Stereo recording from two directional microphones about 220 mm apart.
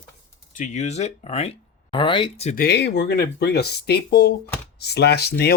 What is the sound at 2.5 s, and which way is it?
Speech, 45° left (ahead or behind).